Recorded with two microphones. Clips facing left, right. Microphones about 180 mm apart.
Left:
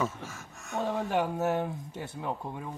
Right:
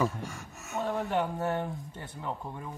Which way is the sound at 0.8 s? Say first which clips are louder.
Left 1 dB; 15° left (ahead or behind).